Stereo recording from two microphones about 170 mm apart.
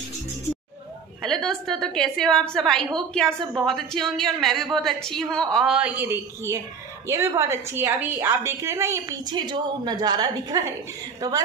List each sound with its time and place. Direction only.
1.2 s a woman's voice: 5° left (ahead or behind); by 11.4 s 20° right (ahead or behind)